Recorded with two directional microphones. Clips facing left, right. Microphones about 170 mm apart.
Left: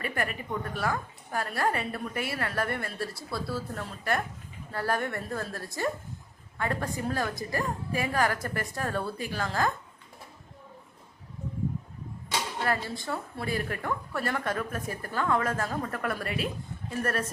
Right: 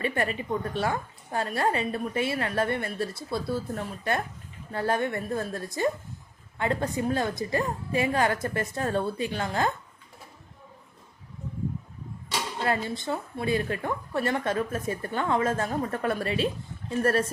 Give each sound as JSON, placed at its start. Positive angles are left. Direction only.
{"t": 0.0, "sound": "a woman's voice", "side_deg": -25}
{"t": 12.6, "sound": "a woman's voice", "side_deg": -20}